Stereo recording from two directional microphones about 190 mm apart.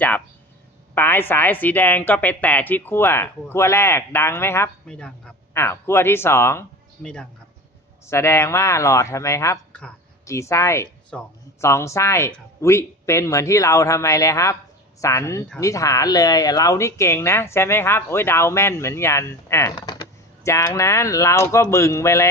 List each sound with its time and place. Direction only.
0.9 s a woman's voice: 10° left (ahead or behind)